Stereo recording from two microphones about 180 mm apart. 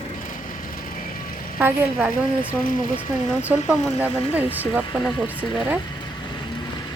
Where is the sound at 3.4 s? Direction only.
10° right (ahead or behind).